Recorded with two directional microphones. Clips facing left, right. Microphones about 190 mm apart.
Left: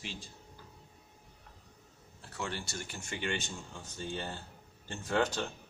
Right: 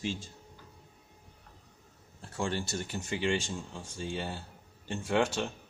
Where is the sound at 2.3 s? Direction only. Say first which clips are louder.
Right 6 dB; 25° right (ahead or behind).